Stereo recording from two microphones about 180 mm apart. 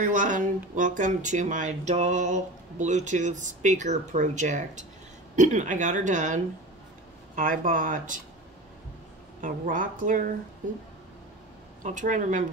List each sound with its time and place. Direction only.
0.0 s speech: 45° right (ahead or behind)
9.4 s speech: 50° right (ahead or behind)
11.8 s speech: 45° right (ahead or behind)